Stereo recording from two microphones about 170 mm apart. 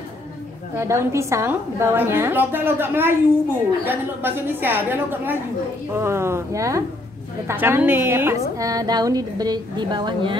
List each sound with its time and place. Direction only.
0.7 s a woman's voice: 15° right (ahead or behind)